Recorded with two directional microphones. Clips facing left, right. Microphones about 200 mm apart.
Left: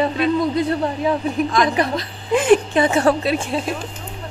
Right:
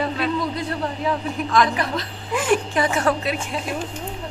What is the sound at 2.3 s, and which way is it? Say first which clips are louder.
A woman's voice: left 6 dB; 20° left (ahead or behind).